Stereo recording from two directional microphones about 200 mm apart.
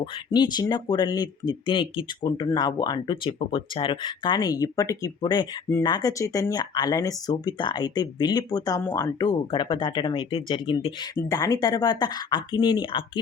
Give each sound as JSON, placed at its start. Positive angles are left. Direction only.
{"t": 0.0, "sound": "speech", "side_deg": 20}
{"t": 11.2, "sound": "speech", "side_deg": 15}